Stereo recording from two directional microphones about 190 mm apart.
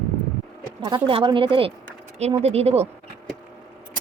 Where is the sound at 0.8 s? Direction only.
25° right (ahead or behind).